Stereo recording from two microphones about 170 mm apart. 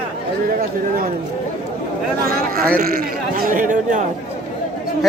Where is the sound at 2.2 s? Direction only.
60° right (ahead or behind).